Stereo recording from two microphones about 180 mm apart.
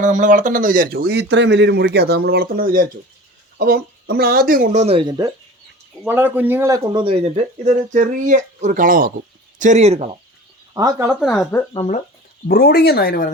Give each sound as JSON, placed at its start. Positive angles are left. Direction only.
{"t": 0.0, "sound": "speech", "side_deg": -45}
{"t": 6.1, "sound": "speech", "side_deg": -10}
{"t": 10.8, "sound": "speech", "side_deg": -15}
{"t": 11.2, "sound": "speech", "side_deg": 5}
{"t": 12.5, "sound": "speech", "side_deg": 55}